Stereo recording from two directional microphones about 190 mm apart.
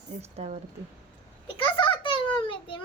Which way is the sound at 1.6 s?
25° left (ahead or behind).